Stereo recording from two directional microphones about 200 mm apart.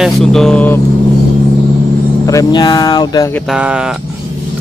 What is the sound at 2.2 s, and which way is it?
Speech, 15° left (ahead or behind).